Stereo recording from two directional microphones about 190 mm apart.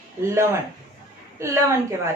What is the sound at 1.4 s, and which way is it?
Speech, 15° right (ahead or behind).